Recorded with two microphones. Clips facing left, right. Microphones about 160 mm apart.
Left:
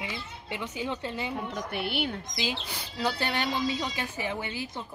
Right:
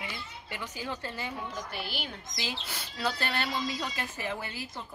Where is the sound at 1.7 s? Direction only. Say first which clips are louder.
Left 7 dB; 60° left (ahead or behind).